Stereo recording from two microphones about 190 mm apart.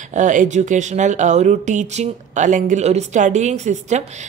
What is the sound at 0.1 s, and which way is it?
Speech, 40° right (ahead or behind).